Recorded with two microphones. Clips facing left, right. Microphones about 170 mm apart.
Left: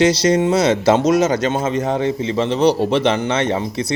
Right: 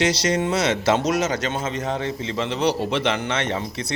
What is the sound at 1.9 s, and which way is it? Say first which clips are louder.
Speech: left 7 dB; 20° left (ahead or behind).